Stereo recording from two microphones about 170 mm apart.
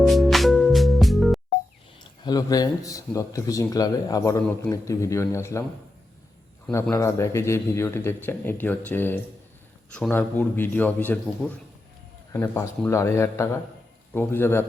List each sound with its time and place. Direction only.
0.0 s music: centre (ahead or behind)
2.2 s a man's voice: 20° left (ahead or behind)
6.9 s speech: 15° left (ahead or behind)